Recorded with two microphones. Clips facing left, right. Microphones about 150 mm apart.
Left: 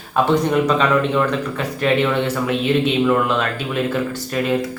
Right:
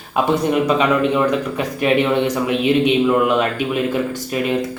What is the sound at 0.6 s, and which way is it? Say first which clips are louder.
A man's voice: right 1 dB; 10° right (ahead or behind).